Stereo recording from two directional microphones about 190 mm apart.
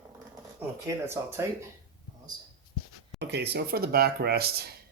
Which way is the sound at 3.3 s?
60° right (ahead or behind).